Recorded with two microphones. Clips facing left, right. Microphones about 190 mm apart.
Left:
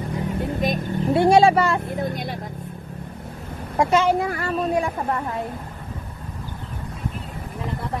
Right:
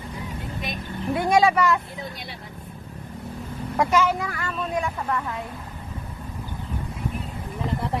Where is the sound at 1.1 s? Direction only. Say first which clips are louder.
Left 4 dB; 30° left (ahead or behind).